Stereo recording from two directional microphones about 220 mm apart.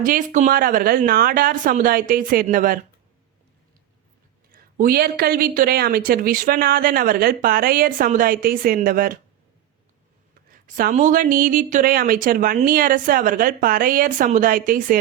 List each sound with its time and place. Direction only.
0.0 s speech: 35° right (ahead or behind)
4.5 s speech: 40° right (ahead or behind)
10.5 s speech: 40° right (ahead or behind)